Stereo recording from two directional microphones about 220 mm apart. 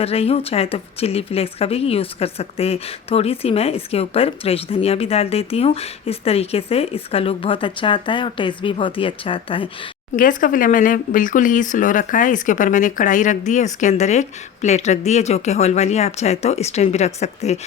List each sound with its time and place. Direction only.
0.0 s a woman's voice: 25° left (ahead or behind)
10.2 s speech: 35° left (ahead or behind)